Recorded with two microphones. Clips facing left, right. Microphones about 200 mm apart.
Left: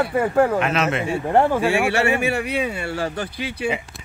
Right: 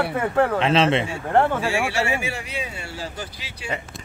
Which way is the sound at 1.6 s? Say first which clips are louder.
Left 4 dB; 60° left (ahead or behind).